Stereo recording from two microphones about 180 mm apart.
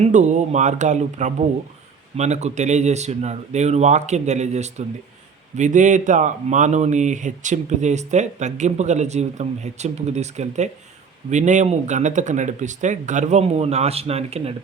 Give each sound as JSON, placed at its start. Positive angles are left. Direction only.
{"t": 0.0, "sound": "speech", "side_deg": -40}